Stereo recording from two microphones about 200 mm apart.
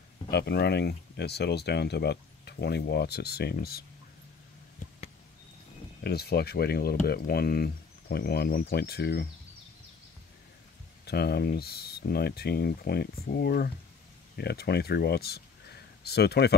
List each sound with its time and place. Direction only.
0.3 s speech: 55° left (ahead or behind)
6.0 s speech: 50° left (ahead or behind)
11.1 s speech: 55° left (ahead or behind)